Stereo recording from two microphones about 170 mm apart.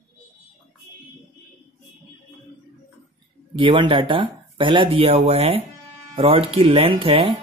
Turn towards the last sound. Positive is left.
turn(degrees=-30)  # may be behind; listen again after turning